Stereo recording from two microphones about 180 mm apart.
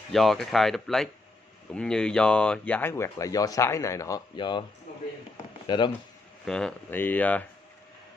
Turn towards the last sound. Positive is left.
turn(degrees=10)  # may be behind; listen again after turning